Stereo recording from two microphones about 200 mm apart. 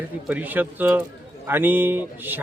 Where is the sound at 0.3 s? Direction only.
10° right (ahead or behind).